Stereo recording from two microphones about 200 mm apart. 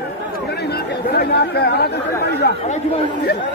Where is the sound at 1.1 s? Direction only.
55° left (ahead or behind).